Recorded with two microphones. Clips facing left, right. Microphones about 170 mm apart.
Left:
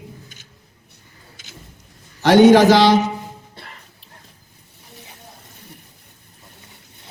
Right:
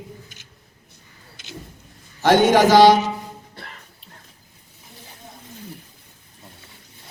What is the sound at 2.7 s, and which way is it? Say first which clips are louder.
Mantra: right 1 dB; 45° right (ahead or behind).